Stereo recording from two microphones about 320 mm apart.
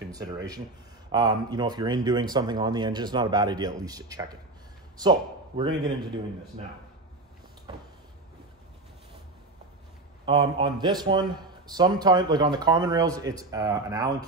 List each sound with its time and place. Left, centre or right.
1.1 s a man's voice: centre
5.6 s a man's voice: centre
10.2 s a man's voice: centre